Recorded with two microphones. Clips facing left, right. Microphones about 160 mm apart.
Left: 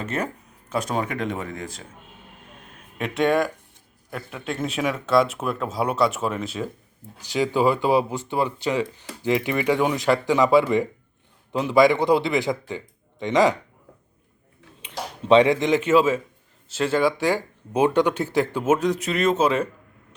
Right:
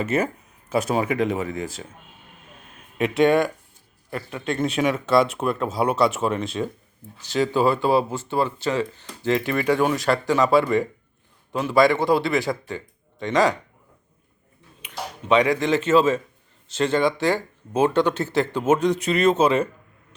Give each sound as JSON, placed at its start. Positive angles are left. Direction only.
{"t": 0.0, "sound": "speech", "side_deg": -5}
{"t": 3.0, "sound": "speech", "side_deg": 0}
{"t": 14.8, "sound": "speech", "side_deg": 30}